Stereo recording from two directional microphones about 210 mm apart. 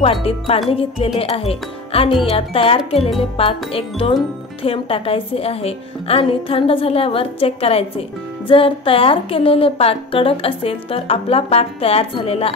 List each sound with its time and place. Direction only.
0.0 s a woman's voice: 25° left (ahead or behind)